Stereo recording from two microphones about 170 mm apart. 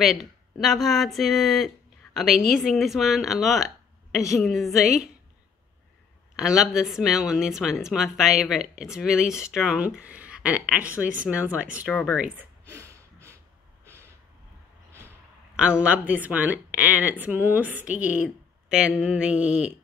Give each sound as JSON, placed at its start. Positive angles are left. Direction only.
{"t": 0.0, "sound": "speech", "side_deg": 0}
{"t": 6.3, "sound": "speech", "side_deg": -5}
{"t": 11.8, "sound": "speech", "side_deg": 10}
{"t": 12.2, "sound": "a sound", "side_deg": -15}
{"t": 15.5, "sound": "speech", "side_deg": -5}